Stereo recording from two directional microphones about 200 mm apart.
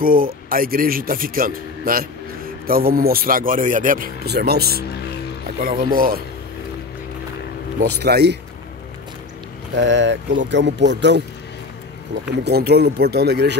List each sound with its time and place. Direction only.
0.0 s speech: 45° right (ahead or behind)
8.0 s speech: 55° right (ahead or behind)
9.8 s speech: 65° right (ahead or behind)
12.4 s speech: 55° right (ahead or behind)